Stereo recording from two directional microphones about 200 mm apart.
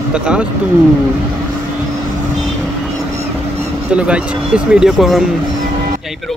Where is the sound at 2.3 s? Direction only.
Centre (ahead or behind).